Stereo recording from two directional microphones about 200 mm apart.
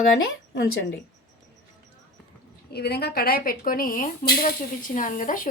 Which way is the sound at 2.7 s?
50° left (ahead or behind).